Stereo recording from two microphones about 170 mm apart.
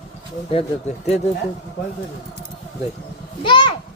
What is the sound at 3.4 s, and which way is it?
Speech, 25° left (ahead or behind).